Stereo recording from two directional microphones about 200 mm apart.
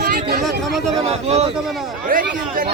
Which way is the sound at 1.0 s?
30° right (ahead or behind).